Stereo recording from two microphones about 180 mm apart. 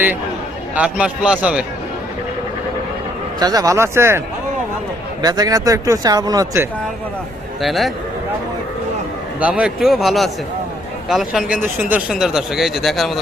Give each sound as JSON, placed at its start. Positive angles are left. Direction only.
{"t": 0.8, "sound": "a man's voice", "side_deg": -5}
{"t": 3.4, "sound": "a man's voice", "side_deg": -20}
{"t": 5.2, "sound": "speech", "side_deg": -20}
{"t": 7.6, "sound": "speech", "side_deg": 0}
{"t": 9.4, "sound": "speech", "side_deg": -5}